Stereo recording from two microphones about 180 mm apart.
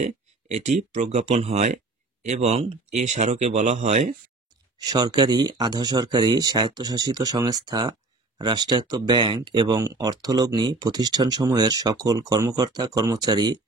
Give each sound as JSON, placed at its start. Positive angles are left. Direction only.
{"t": 0.0, "sound": "speech", "side_deg": -40}
{"t": 4.7, "sound": "speech", "side_deg": -20}